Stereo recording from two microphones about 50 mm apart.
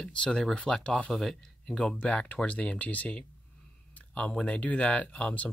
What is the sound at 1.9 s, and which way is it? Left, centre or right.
Speech, left.